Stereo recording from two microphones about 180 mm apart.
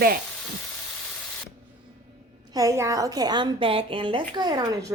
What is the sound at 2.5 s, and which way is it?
A woman's voice, 20° right (ahead or behind).